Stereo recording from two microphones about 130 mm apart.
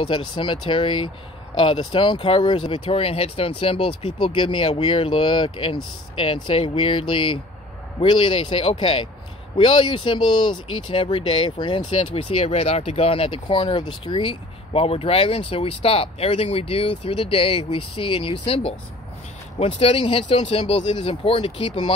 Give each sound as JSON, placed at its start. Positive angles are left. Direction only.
{"t": 0.0, "sound": "speech", "side_deg": 40}